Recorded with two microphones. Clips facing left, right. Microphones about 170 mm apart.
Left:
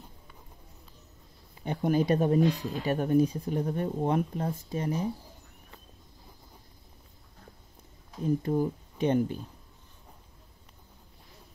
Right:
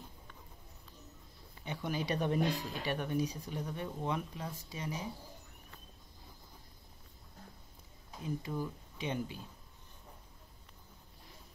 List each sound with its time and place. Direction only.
1.6 s speech: 50° left (ahead or behind)
8.2 s speech: 50° left (ahead or behind)